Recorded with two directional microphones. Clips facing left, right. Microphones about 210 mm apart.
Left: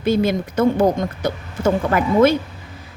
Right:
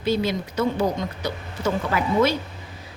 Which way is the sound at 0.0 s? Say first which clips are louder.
Left 5 dB; 50° left (ahead or behind).